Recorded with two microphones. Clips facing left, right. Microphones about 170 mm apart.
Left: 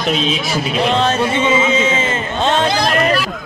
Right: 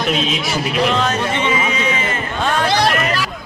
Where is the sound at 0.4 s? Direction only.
30° left (ahead or behind).